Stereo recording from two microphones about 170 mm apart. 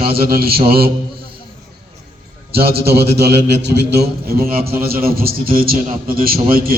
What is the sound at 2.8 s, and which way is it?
Speech, 70° right (ahead or behind).